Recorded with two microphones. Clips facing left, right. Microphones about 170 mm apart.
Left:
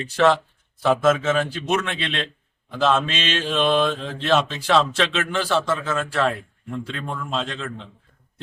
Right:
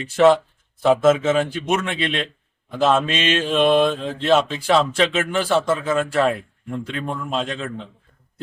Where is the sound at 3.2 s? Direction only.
55° right (ahead or behind).